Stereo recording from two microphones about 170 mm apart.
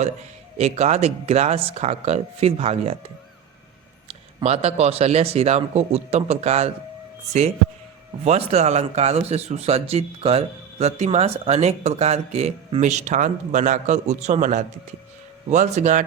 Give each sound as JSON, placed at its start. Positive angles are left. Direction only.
{"t": 0.6, "sound": "speech", "side_deg": -40}
{"t": 4.1, "sound": "speech", "side_deg": -35}
{"t": 8.2, "sound": "speech", "side_deg": -40}